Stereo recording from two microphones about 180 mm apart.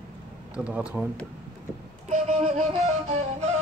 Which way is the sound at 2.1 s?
40° right (ahead or behind).